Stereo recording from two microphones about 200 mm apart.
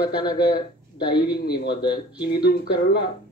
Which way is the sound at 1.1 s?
20° left (ahead or behind).